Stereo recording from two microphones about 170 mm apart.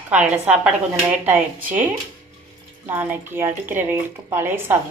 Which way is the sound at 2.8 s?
10° right (ahead or behind).